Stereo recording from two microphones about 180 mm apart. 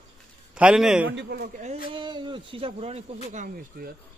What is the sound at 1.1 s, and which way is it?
Speech, 60° right (ahead or behind).